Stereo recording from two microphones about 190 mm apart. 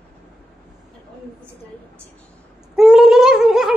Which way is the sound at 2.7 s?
Centre (ahead or behind).